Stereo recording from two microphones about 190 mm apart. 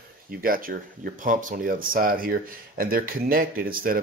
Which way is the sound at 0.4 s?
50° right (ahead or behind).